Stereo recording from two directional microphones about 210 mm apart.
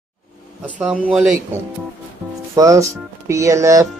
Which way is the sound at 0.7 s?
5° right (ahead or behind).